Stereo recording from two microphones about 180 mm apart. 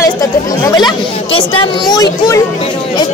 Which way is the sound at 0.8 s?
25° left (ahead or behind).